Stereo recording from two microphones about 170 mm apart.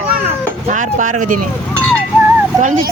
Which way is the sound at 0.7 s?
50° right (ahead or behind).